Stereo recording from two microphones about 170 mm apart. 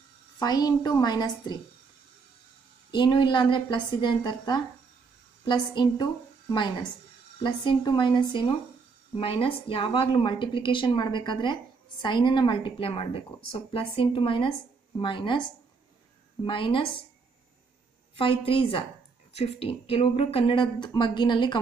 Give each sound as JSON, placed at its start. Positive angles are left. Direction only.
{"t": 0.4, "sound": "a woman's voice", "side_deg": 25}
{"t": 2.9, "sound": "a woman's voice", "side_deg": 25}
{"t": 16.4, "sound": "a woman's voice", "side_deg": 30}
{"t": 18.1, "sound": "speech", "side_deg": 30}